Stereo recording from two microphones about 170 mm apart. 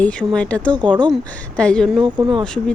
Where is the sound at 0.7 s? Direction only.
25° right (ahead or behind).